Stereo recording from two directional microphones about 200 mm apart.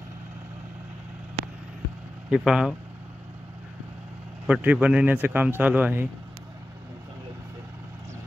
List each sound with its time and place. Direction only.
2.3 s speech: 5° right (ahead or behind)
4.5 s speech: 5° right (ahead or behind)